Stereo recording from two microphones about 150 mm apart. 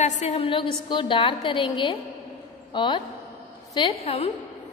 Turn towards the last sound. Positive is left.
turn(degrees=40)  # may be behind; listen again after turning